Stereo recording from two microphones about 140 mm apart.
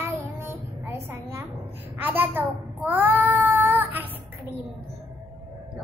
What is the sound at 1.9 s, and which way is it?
Cat, 15° right (ahead or behind).